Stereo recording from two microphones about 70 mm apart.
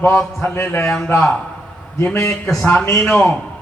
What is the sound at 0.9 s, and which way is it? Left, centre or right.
Speech, centre.